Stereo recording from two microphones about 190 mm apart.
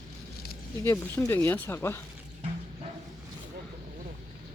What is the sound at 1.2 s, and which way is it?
Speech, 10° left (ahead or behind).